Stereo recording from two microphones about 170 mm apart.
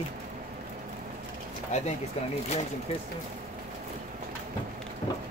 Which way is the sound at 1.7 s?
40° left (ahead or behind).